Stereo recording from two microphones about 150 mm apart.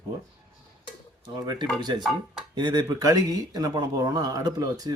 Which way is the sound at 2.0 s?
Centre (ahead or behind).